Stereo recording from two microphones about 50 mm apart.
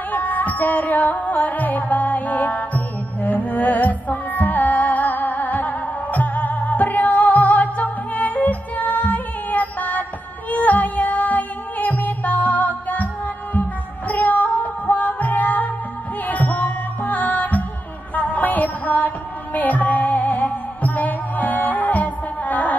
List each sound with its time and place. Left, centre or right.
0.1 s music: left